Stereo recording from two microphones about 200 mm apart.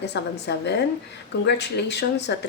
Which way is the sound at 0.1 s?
60° left (ahead or behind).